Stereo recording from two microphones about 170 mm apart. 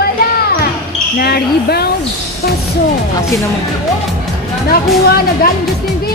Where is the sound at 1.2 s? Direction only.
65° left (ahead or behind).